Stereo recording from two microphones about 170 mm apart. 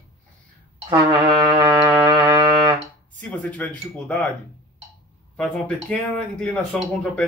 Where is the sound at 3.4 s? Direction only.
10° left (ahead or behind).